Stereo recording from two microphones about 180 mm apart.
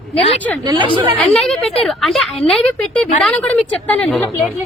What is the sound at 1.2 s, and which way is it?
A woman's voice, 5° left (ahead or behind).